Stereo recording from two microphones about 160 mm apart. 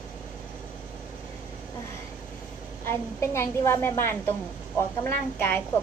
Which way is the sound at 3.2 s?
15° left (ahead or behind).